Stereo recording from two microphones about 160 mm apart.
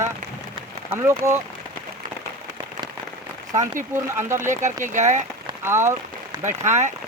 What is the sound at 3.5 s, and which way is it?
Speech, 50° right (ahead or behind).